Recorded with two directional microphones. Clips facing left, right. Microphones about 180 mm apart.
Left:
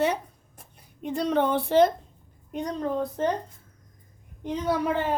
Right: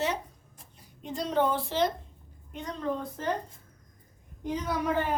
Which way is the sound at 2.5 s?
40° left (ahead or behind).